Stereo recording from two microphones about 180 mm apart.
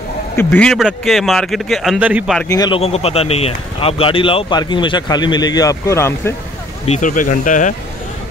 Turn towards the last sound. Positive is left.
turn(degrees=45)  # may be behind; listen again after turning